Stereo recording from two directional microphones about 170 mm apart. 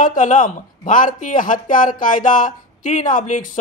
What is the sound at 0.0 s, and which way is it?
Speech, 50° left (ahead or behind).